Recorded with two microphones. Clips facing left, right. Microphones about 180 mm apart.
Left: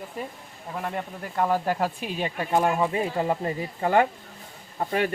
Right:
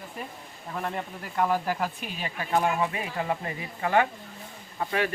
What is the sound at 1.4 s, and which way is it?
Speech, 25° left (ahead or behind).